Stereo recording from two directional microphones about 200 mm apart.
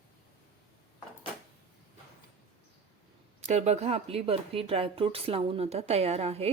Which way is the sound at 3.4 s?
35° right (ahead or behind).